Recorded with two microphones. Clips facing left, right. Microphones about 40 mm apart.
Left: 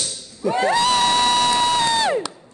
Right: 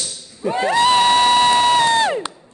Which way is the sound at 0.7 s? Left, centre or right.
Right.